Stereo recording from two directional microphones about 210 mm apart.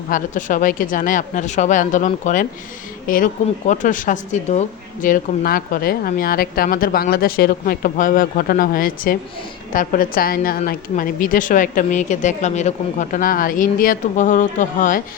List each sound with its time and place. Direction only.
0.1 s a woman's voice: 40° left (ahead or behind)
3.7 s a woman's voice: 40° left (ahead or behind)